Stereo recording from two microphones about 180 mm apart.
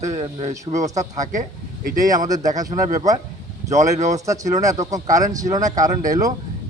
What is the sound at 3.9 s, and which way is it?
Speech, 40° right (ahead or behind).